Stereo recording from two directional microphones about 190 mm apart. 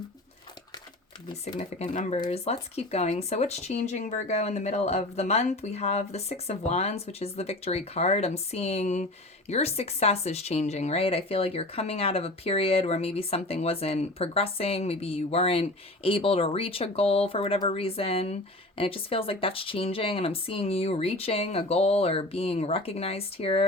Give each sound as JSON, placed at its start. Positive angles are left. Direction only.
{"t": 1.5, "sound": "speech", "side_deg": 40}